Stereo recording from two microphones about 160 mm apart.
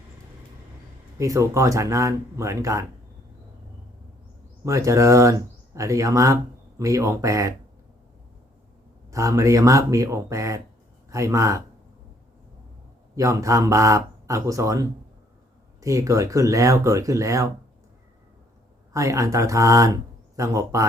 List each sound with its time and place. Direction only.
1.2 s speech: 20° right (ahead or behind)
4.6 s speech: 20° right (ahead or behind)
9.0 s speech: 20° right (ahead or behind)
13.1 s speech: 20° right (ahead or behind)
18.9 s speech: 20° right (ahead or behind)